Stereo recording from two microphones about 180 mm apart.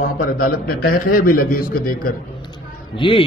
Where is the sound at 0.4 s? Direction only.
55° left (ahead or behind).